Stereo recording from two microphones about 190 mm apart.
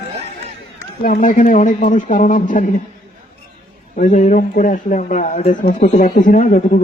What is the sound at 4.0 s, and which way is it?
Speech, 45° left (ahead or behind).